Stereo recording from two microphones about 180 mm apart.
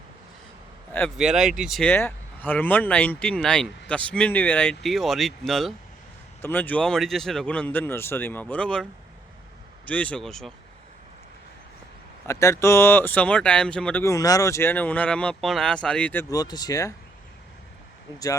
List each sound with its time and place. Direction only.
0.9 s speech: centre (ahead or behind)
1.9 s speech: 10° left (ahead or behind)
12.2 s speech: 15° left (ahead or behind)
16.3 s speech: 20° left (ahead or behind)
18.1 s speech: 20° left (ahead or behind)